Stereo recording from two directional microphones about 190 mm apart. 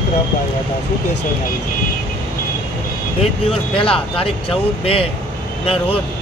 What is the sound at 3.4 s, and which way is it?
Speech, 30° left (ahead or behind).